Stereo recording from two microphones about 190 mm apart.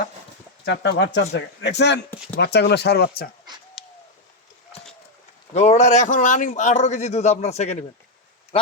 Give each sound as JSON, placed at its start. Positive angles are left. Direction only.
{"t": 0.6, "sound": "speech", "side_deg": 65}
{"t": 3.8, "sound": "bird", "side_deg": 0}
{"t": 5.5, "sound": "a man's voice", "side_deg": 35}